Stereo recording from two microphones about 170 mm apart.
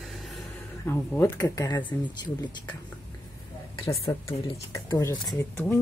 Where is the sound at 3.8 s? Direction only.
20° left (ahead or behind).